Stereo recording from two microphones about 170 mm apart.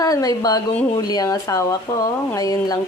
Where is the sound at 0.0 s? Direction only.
20° left (ahead or behind).